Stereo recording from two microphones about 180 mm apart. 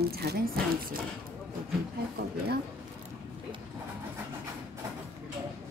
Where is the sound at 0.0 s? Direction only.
60° right (ahead or behind).